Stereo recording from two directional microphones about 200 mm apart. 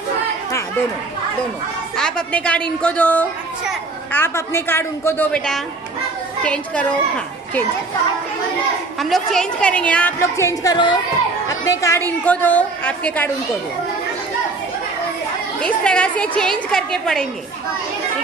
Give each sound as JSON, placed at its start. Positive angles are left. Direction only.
{"t": 2.0, "sound": "a woman's voice", "side_deg": 5}
{"t": 9.1, "sound": "a woman's voice", "side_deg": 5}
{"t": 15.6, "sound": "a woman's voice", "side_deg": 5}